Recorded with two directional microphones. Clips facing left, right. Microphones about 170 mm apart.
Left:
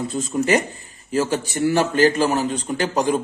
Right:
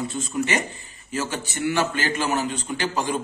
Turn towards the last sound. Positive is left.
turn(degrees=40)  # may be behind; listen again after turning